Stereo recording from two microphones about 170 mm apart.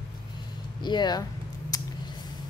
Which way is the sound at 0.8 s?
25° left (ahead or behind).